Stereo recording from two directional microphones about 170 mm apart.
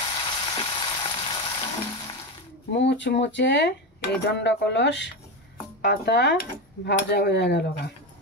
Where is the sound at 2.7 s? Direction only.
90° left.